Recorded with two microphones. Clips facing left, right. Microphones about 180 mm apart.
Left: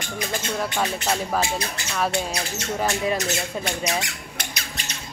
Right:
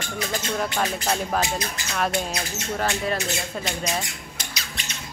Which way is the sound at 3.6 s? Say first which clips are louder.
Left 2 dB; 10° left (ahead or behind).